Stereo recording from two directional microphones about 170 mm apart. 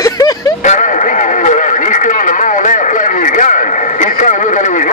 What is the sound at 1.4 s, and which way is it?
Radio, 45° left (ahead or behind).